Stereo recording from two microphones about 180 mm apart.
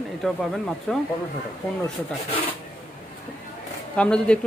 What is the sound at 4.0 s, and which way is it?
Speech, 5° left (ahead or behind).